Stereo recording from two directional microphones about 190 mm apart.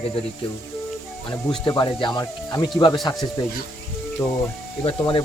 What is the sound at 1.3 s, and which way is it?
Speech, 25° left (ahead or behind).